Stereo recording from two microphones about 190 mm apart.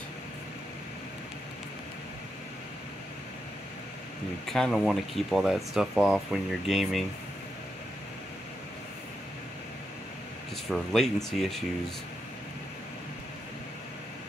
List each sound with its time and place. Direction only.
4.5 s speech: centre (ahead or behind)
10.7 s speech: centre (ahead or behind)